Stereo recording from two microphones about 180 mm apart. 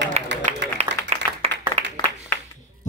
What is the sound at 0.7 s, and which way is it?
Clapping, 35° right (ahead or behind).